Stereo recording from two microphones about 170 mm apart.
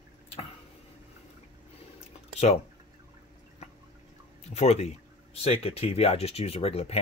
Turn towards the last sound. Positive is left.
turn(degrees=35)  # may be behind; listen again after turning